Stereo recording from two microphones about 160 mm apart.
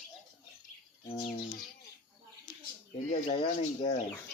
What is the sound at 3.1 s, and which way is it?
Speech, 40° left (ahead or behind).